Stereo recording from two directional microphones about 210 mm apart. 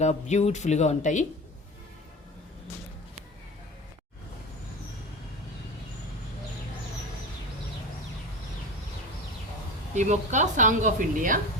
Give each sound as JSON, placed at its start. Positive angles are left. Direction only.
{"t": 0.0, "sound": "speech", "side_deg": 35}
{"t": 9.9, "sound": "a woman's voice", "side_deg": -35}